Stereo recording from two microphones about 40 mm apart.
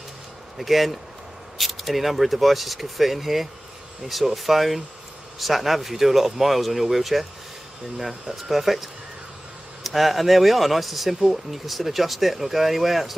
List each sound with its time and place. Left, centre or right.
0.6 s speech: centre